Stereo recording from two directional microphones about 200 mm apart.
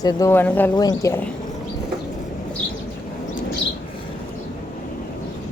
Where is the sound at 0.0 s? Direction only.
15° left (ahead or behind).